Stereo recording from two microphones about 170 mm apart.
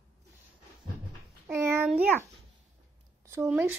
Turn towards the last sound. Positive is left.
turn(degrees=-10)  # may be behind; listen again after turning